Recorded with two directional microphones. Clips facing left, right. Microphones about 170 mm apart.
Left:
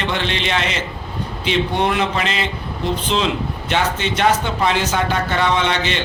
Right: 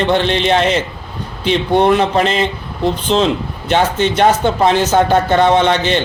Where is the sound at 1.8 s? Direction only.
40° right (ahead or behind).